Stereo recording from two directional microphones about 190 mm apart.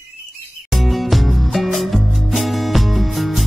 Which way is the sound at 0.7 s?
Centre (ahead or behind).